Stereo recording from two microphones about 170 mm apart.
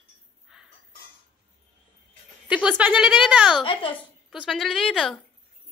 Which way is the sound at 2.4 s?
5° right (ahead or behind).